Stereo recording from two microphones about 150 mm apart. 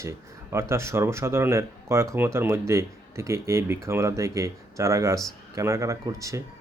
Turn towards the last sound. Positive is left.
turn(degrees=-20)  # may be behind; listen again after turning